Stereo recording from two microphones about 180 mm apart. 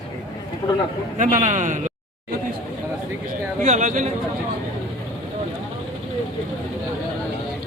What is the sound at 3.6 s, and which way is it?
Speech, 40° right (ahead or behind).